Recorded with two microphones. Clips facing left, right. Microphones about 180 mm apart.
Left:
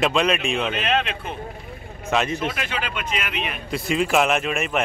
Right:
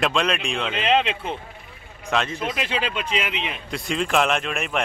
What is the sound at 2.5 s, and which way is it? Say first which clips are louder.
Speech: right 2 dB; 25° right (ahead or behind).